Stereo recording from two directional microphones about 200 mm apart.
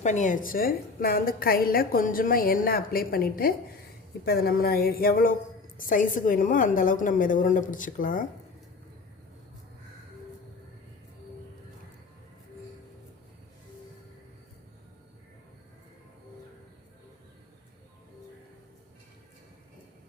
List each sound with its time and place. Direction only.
0.0 s a woman's voice: 35° left (ahead or behind)